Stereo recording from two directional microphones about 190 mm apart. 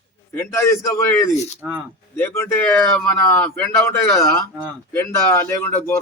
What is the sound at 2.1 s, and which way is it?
A man's voice, 10° left (ahead or behind).